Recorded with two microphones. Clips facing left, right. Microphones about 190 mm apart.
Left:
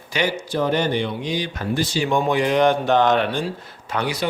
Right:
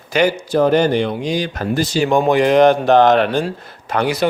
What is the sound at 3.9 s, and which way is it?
Speech, 75° right (ahead or behind).